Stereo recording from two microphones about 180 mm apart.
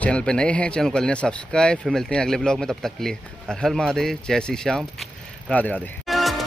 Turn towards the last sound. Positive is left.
turn(degrees=0)  # may be behind; listen again after turning